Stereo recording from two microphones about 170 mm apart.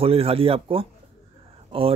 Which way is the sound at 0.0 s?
35° right (ahead or behind).